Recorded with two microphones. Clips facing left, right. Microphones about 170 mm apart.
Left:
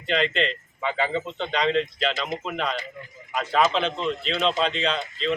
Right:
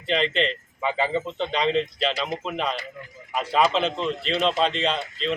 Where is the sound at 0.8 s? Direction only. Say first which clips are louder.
Right 1 dB; 5° right (ahead or behind).